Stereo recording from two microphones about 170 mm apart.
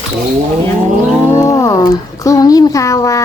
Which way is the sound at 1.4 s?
15° left (ahead or behind).